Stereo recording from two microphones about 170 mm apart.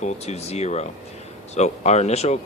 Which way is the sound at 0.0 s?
40° left (ahead or behind).